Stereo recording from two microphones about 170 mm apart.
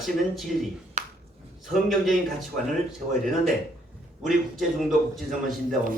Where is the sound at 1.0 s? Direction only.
45° right (ahead or behind).